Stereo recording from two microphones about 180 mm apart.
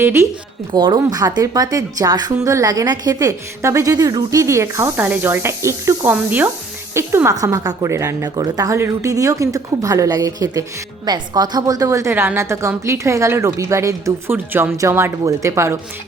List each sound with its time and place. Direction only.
0.0 s speech: 15° right (ahead or behind)